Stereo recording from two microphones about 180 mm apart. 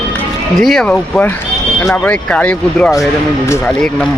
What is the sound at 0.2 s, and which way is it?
Speech, centre (ahead or behind).